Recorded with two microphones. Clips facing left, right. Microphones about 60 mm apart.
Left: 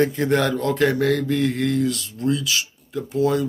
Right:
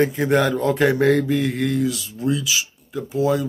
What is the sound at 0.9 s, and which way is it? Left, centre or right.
Mantra, right.